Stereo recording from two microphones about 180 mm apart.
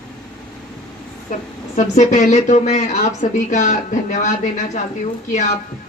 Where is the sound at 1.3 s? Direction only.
40° left (ahead or behind).